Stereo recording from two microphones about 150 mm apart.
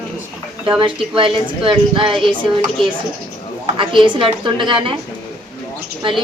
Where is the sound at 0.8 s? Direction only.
35° right (ahead or behind).